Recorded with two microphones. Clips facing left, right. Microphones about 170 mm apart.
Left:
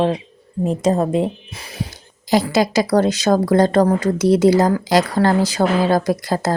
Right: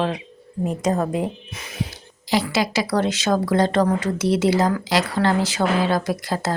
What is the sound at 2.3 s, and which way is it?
Speech, 45° left (ahead or behind).